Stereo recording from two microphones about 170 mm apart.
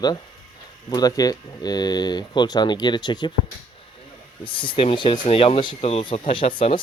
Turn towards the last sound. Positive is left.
turn(degrees=30)  # may be behind; listen again after turning